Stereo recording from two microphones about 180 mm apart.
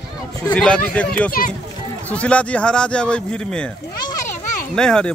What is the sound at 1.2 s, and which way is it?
Speech, 50° left (ahead or behind).